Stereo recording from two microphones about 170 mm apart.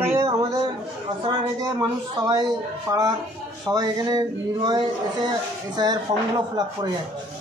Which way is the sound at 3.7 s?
20° right (ahead or behind).